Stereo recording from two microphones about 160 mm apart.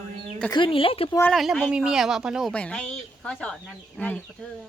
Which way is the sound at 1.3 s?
Centre (ahead or behind).